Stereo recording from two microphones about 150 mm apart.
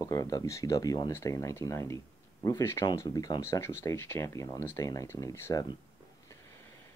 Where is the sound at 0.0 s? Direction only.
25° left (ahead or behind).